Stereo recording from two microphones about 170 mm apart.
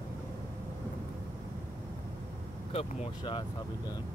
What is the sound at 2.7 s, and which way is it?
Speech, 30° left (ahead or behind).